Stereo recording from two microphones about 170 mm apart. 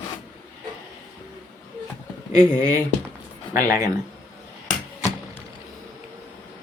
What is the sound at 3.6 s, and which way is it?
Speech, 15° right (ahead or behind).